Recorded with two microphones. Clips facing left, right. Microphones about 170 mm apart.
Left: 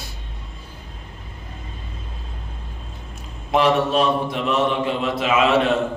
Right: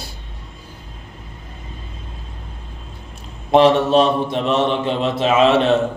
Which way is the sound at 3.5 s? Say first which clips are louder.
Right 5 dB; 30° right (ahead or behind).